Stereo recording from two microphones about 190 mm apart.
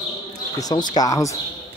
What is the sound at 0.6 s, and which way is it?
Speech, 20° left (ahead or behind).